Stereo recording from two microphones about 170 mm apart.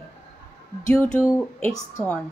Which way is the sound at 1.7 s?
20° left (ahead or behind).